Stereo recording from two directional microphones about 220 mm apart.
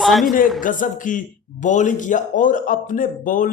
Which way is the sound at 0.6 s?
35° left (ahead or behind).